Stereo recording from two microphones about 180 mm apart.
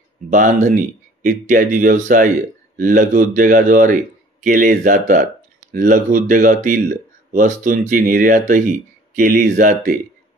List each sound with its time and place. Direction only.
0.3 s speech: 45° right (ahead or behind)